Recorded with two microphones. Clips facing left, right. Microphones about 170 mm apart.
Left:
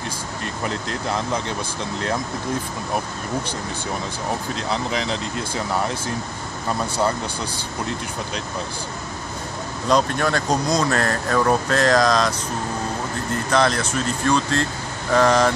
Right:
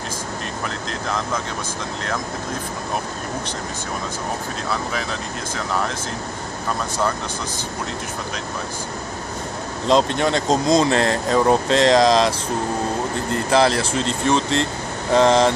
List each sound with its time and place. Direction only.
9.8 s speech: 25° right (ahead or behind)
13.5 s speech: 30° right (ahead or behind)